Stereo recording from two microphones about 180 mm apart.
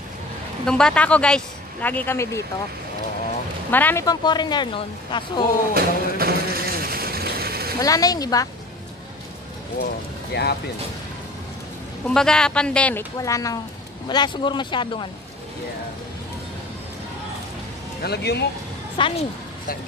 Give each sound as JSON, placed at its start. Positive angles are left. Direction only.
{"t": 0.7, "sound": "a man's voice", "side_deg": 5}
{"t": 3.7, "sound": "speech", "side_deg": 10}
{"t": 5.8, "sound": "a sound", "side_deg": -55}
{"t": 7.8, "sound": "speech", "side_deg": 20}
{"t": 10.3, "sound": "speech", "side_deg": 65}
{"t": 12.1, "sound": "speech", "side_deg": 5}
{"t": 13.2, "sound": "speech", "side_deg": 20}
{"t": 18.0, "sound": "speech", "side_deg": 65}
{"t": 18.9, "sound": "speech", "side_deg": 30}